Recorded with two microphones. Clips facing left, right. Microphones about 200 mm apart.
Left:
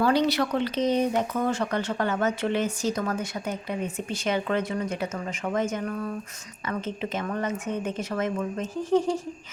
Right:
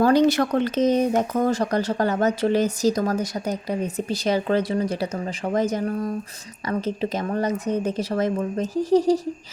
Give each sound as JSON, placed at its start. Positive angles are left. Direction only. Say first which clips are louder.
{"t": 0.0, "sound": "speech", "louder": "right 5 dB", "side_deg": -45}